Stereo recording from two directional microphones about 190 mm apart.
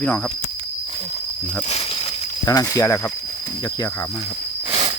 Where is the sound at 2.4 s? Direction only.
20° left (ahead or behind).